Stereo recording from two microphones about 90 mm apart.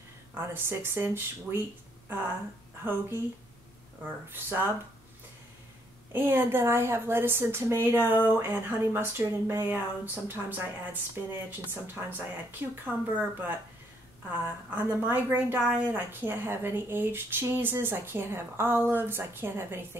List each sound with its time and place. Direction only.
0.3 s a woman's voice: 25° right (ahead or behind)
2.8 s a woman's voice: 25° right (ahead or behind)
6.1 s a woman's voice: 25° right (ahead or behind)